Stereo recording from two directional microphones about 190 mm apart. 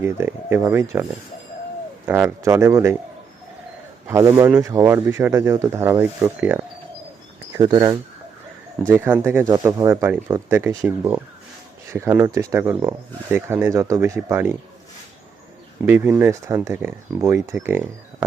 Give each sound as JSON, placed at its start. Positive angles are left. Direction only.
{"t": 0.0, "sound": "speech", "side_deg": -15}
{"t": 2.0, "sound": "speech", "side_deg": -10}
{"t": 4.0, "sound": "speech", "side_deg": -15}
{"t": 7.5, "sound": "speech", "side_deg": -25}
{"t": 8.9, "sound": "speech", "side_deg": -10}
{"t": 15.9, "sound": "speech", "side_deg": -10}